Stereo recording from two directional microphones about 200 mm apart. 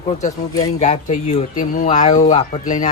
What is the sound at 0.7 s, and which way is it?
Speech, 35° left (ahead or behind).